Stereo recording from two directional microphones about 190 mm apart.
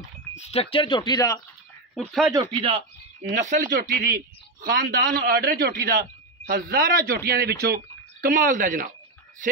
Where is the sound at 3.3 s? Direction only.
40° right (ahead or behind).